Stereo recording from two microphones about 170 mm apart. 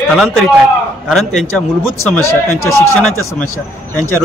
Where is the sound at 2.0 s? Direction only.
15° left (ahead or behind).